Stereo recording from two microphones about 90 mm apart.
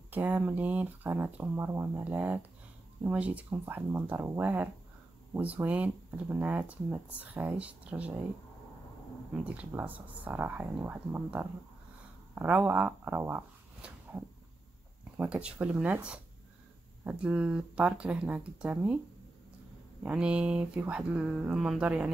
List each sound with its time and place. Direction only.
0.1 s speech: 20° right (ahead or behind)
9.3 s speech: 15° right (ahead or behind)
12.4 s speech: 15° right (ahead or behind)
20.0 s speech: 15° right (ahead or behind)